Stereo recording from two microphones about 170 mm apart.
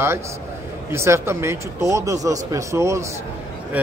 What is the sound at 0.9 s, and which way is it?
A man's voice, 15° right (ahead or behind).